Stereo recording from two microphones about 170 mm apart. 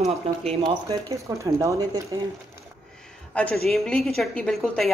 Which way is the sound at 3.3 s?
5° left (ahead or behind).